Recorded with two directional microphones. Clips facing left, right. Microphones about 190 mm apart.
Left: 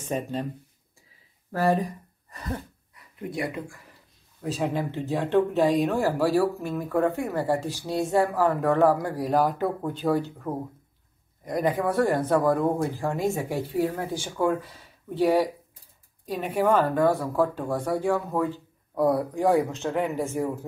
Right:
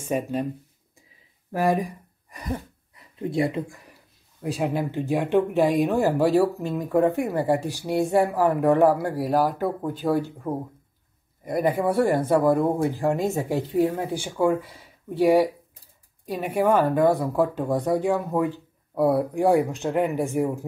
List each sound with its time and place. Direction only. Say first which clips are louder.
0.0 s speech: right 3 dB; 10° right (ahead or behind)
1.5 s a sound: right 1 dB; 15° right (ahead or behind)
3.2 s speech: right 6 dB; 25° right (ahead or behind)
4.4 s speech: right 2 dB; 10° right (ahead or behind)